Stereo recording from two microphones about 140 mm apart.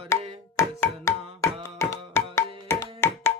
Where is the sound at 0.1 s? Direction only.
20° left (ahead or behind).